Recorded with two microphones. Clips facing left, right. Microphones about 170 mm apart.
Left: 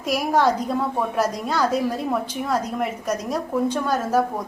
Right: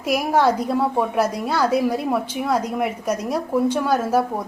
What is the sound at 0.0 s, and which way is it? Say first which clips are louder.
A woman's voice: right 1 dB; 10° right (ahead or behind).